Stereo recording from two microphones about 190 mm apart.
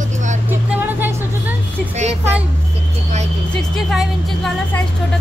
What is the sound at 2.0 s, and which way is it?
Speech, 35° right (ahead or behind).